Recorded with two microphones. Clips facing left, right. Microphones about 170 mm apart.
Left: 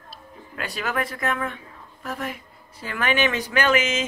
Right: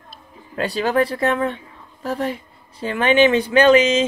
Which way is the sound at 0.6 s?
30° right (ahead or behind).